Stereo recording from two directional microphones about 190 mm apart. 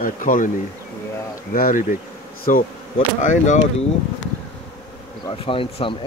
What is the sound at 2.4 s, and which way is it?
Bee, 45° left (ahead or behind).